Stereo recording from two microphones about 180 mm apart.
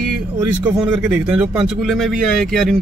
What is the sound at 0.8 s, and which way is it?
Speech, 5° right (ahead or behind).